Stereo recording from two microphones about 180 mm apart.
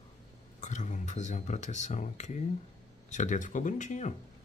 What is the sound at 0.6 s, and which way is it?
Speech, 40° left (ahead or behind).